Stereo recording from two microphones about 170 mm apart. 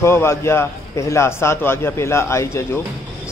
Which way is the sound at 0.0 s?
15° left (ahead or behind).